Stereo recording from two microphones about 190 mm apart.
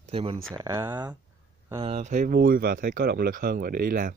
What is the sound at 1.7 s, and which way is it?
Speech, 30° right (ahead or behind).